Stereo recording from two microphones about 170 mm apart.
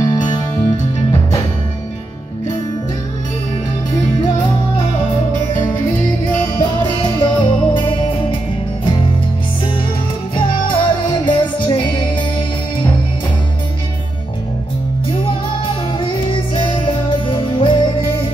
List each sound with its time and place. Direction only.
0.0 s music: 25° left (ahead or behind)
6.6 s music: 25° left (ahead or behind)
10.3 s music: 30° left (ahead or behind)
16.0 s music: 30° left (ahead or behind)